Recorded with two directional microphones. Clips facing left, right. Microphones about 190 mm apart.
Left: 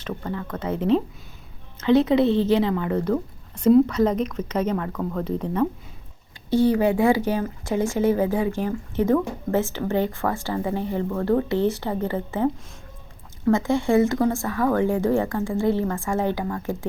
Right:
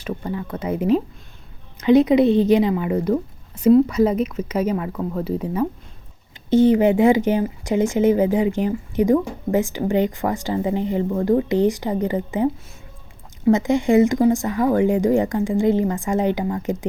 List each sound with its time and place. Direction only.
0.0 s speech: 15° right (ahead or behind)
6.5 s speech: 20° right (ahead or behind)